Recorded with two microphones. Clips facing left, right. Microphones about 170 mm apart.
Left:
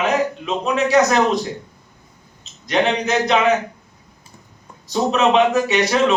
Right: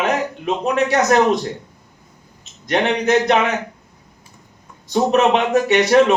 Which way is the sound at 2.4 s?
55° right (ahead or behind).